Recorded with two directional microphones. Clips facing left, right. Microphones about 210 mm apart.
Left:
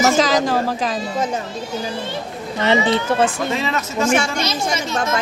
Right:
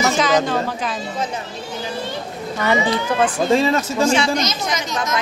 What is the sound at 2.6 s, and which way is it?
Speech, 25° left (ahead or behind).